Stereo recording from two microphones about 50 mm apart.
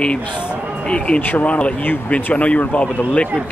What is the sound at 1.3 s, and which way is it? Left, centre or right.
Speech, left.